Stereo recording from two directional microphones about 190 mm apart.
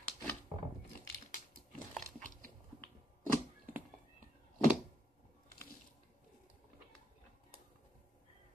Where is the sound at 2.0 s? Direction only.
45° right (ahead or behind).